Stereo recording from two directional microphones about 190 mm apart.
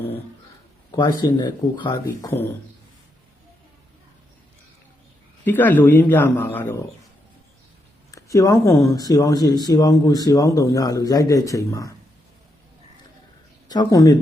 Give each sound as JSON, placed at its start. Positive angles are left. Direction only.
{"t": 0.9, "sound": "speech", "side_deg": 20}
{"t": 2.2, "sound": "speech", "side_deg": 10}
{"t": 5.5, "sound": "speech", "side_deg": 10}
{"t": 8.1, "sound": "speech", "side_deg": 15}
{"t": 13.7, "sound": "speech", "side_deg": 20}